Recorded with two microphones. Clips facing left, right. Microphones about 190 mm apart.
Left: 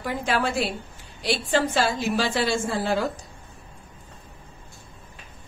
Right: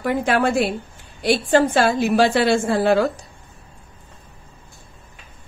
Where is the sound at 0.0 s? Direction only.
60° right (ahead or behind).